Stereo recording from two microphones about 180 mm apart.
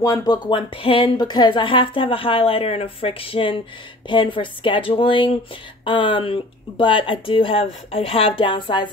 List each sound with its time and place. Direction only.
0.0 s speech: 20° left (ahead or behind)